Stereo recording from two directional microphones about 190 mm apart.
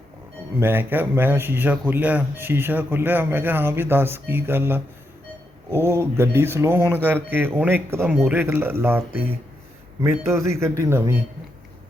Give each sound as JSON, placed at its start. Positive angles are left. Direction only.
{"t": 0.6, "sound": "speech", "side_deg": -10}